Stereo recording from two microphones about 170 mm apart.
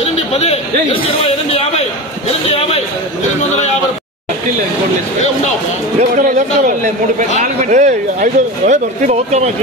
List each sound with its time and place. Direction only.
0.0 s chatter: 40° left (ahead or behind)
1.5 s a sound: 35° left (ahead or behind)
5.9 s a man's voice: 45° right (ahead or behind)